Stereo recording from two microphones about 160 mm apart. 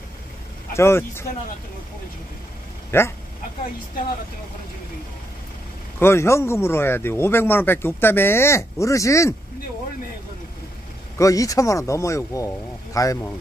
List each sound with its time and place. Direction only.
0.7 s speech: 15° left (ahead or behind)
2.9 s speech: 15° left (ahead or behind)
5.9 s speech: 15° left (ahead or behind)
11.1 s speech: 20° left (ahead or behind)